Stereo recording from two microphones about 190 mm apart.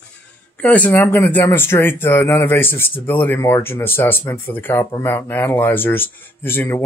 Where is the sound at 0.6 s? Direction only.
10° left (ahead or behind).